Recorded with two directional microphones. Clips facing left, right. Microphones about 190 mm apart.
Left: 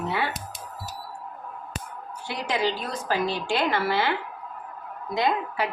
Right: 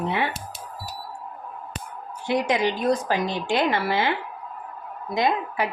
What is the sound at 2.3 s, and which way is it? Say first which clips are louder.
Speech: right 5 dB; 20° right (ahead or behind).